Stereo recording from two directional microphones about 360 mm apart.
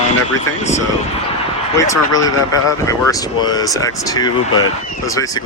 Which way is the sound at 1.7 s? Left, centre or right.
Centre.